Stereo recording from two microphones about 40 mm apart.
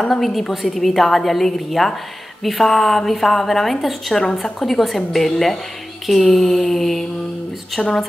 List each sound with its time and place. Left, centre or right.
0.1 s a woman's voice: centre
6.0 s mantra: centre